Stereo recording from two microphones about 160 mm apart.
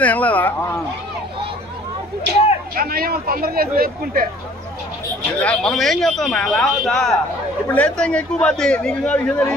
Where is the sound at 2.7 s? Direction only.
70° right (ahead or behind).